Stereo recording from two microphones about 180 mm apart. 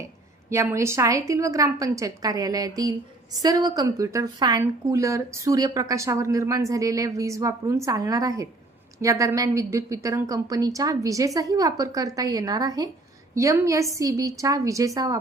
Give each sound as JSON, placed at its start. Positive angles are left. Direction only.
{"t": 0.5, "sound": "a woman's voice", "side_deg": -15}